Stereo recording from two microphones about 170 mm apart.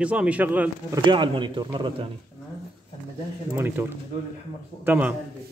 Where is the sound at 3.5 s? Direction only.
15° right (ahead or behind).